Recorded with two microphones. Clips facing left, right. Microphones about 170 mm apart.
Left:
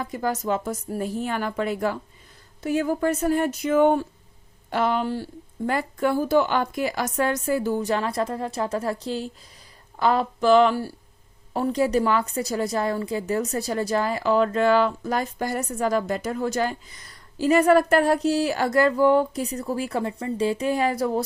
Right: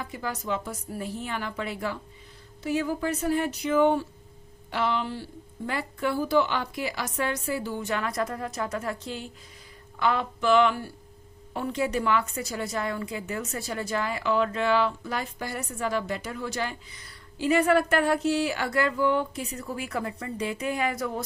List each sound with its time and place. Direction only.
0.0 s a woman's voice: 45° left (ahead or behind)